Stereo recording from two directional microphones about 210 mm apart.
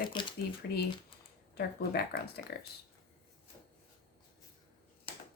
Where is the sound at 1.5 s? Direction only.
50° left (ahead or behind).